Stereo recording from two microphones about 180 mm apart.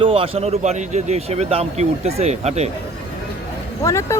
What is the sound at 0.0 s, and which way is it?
A man's voice, 30° right (ahead or behind).